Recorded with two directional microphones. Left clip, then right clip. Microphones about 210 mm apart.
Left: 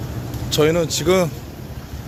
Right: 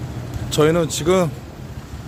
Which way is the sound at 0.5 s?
20° right (ahead or behind).